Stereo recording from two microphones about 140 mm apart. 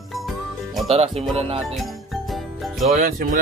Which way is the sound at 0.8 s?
45° right (ahead or behind).